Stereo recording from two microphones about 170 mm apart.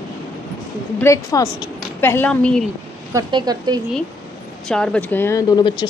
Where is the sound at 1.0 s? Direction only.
20° left (ahead or behind).